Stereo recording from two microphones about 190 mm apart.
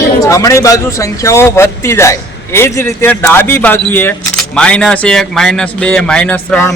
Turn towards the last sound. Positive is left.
turn(degrees=10)  # may be behind; listen again after turning